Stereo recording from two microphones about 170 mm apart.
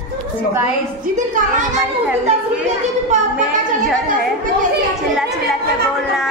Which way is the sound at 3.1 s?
45° right (ahead or behind).